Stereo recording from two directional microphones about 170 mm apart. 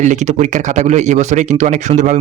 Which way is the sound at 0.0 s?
45° right (ahead or behind).